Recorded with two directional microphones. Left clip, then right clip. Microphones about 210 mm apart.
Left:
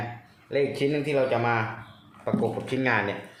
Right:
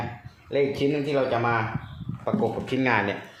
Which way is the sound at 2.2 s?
15° right (ahead or behind).